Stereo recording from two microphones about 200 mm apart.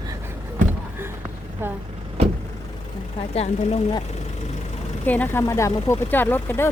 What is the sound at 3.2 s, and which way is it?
Speech, 30° left (ahead or behind).